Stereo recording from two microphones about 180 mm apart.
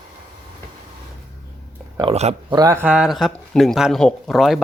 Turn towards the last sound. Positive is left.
turn(degrees=0)  # may be behind; listen again after turning